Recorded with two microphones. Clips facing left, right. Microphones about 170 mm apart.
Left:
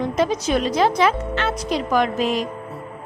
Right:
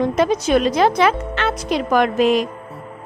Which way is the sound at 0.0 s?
60° right (ahead or behind).